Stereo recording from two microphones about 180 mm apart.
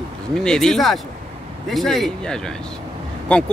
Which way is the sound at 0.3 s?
5° left (ahead or behind).